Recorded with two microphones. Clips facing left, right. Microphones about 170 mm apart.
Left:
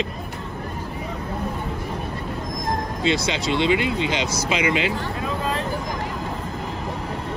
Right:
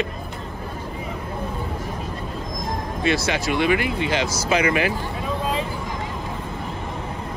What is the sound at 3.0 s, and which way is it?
Speech, 20° left (ahead or behind).